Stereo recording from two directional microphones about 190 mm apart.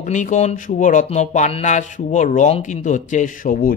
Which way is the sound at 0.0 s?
40° left (ahead or behind).